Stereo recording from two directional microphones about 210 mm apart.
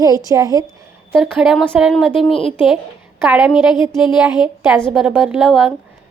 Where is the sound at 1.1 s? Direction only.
Centre (ahead or behind).